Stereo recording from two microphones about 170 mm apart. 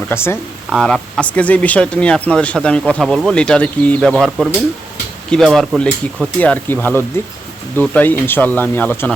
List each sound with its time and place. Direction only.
0.1 s speech: 15° left (ahead or behind)
0.7 s speech: centre (ahead or behind)